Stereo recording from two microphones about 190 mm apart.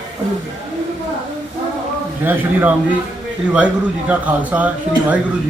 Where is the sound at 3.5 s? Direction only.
5° right (ahead or behind).